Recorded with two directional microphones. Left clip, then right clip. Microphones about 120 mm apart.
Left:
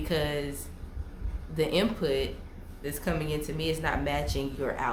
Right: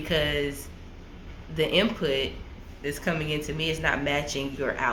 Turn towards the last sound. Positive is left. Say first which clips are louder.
# right 3 dB
turn(degrees=25)  # may be behind; listen again after turning